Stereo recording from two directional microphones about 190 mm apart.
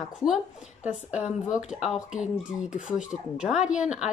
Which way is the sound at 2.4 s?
40° left (ahead or behind).